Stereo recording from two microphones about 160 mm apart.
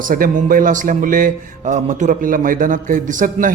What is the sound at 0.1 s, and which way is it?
A man's voice, 60° right (ahead or behind).